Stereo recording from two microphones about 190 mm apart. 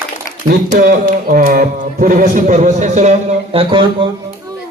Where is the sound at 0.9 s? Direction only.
50° right (ahead or behind); by 3.8 s 30° right (ahead or behind).